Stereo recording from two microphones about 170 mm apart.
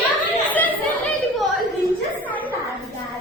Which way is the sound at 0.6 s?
10° left (ahead or behind).